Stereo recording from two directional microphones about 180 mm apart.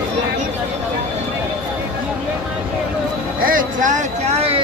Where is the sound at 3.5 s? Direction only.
45° right (ahead or behind).